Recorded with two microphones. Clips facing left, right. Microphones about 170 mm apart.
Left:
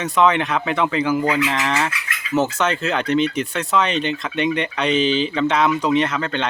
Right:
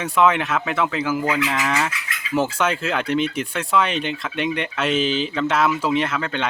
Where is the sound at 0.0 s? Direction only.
10° right (ahead or behind).